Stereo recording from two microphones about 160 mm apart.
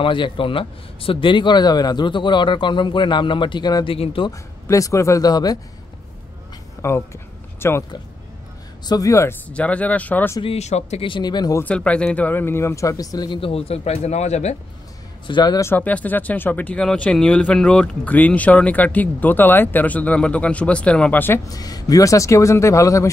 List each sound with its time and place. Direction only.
0.0 s speech: 30° left (ahead or behind)
4.3 s speech: 20° left (ahead or behind)
6.8 s speech: 15° left (ahead or behind)
8.8 s speech: 20° left (ahead or behind)
9.5 s speech: 10° left (ahead or behind)
10.4 s speech: 40° left (ahead or behind); by 11.6 s 25° left (ahead or behind)
11.6 s speech: 10° left (ahead or behind); by 14.6 s 45° left (ahead or behind)
15.2 s speech: 25° left (ahead or behind)
15.7 s speech: 10° left (ahead or behind)